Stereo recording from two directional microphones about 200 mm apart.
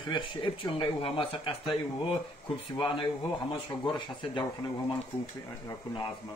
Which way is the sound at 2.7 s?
25° left (ahead or behind).